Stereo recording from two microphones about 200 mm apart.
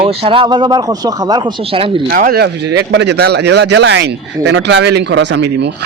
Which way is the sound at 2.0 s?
45° right (ahead or behind).